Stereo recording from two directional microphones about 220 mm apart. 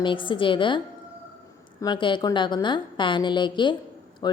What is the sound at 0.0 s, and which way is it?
Speech, 20° left (ahead or behind).